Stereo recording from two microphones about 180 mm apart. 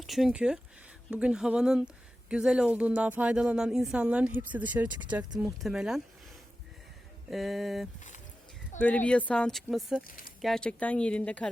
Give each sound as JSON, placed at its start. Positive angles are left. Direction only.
{"t": 0.0, "sound": "speech", "side_deg": 0}
{"t": 7.3, "sound": "speech", "side_deg": 0}
{"t": 7.9, "sound": "a sound", "side_deg": 45}
{"t": 8.8, "sound": "speech", "side_deg": 5}